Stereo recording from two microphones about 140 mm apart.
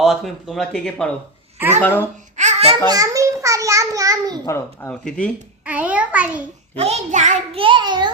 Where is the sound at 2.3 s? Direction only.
55° right (ahead or behind).